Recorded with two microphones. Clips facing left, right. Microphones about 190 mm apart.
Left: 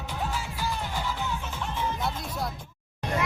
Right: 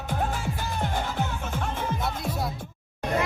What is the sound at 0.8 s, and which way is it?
Music, 55° right (ahead or behind).